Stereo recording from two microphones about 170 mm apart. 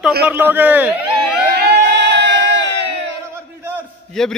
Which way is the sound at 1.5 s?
75° right (ahead or behind).